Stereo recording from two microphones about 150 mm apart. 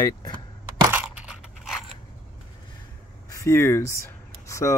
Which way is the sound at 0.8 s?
10° right (ahead or behind).